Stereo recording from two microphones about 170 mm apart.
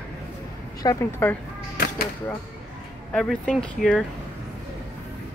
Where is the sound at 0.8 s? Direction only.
20° left (ahead or behind).